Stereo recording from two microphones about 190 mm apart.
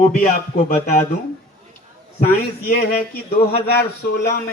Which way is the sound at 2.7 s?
55° left (ahead or behind).